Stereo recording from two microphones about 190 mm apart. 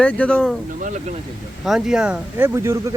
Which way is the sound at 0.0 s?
5° left (ahead or behind).